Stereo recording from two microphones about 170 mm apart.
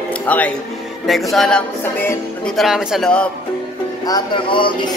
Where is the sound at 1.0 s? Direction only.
Centre (ahead or behind).